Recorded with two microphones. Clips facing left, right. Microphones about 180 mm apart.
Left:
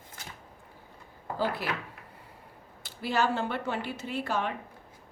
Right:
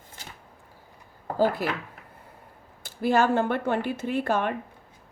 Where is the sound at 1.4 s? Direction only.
45° right (ahead or behind).